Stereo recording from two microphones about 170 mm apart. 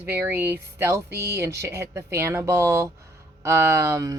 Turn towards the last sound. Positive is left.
turn(degrees=-15)  # may be behind; listen again after turning